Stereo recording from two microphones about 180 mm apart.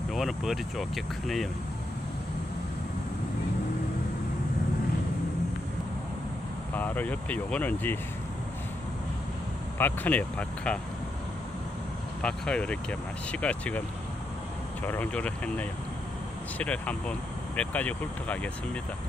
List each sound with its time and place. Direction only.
0.1 s speech: centre (ahead or behind)
6.7 s speech: 10° left (ahead or behind)
9.8 s speech: 10° left (ahead or behind)
12.2 s speech: 5° left (ahead or behind)
14.9 s speech: 10° left (ahead or behind)